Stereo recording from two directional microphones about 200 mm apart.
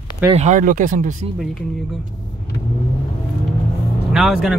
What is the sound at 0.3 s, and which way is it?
Speech, 35° right (ahead or behind).